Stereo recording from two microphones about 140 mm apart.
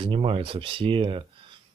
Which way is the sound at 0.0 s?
40° right (ahead or behind).